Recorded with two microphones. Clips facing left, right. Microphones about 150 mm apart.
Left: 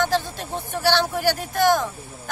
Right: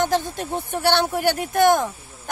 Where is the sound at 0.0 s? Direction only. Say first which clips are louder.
Right 1 dB; 20° right (ahead or behind).